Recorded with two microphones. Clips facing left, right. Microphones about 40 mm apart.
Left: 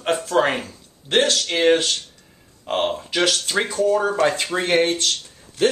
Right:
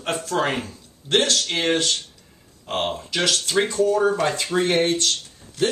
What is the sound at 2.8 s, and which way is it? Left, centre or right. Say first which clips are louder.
Speech: left 3 dB; centre.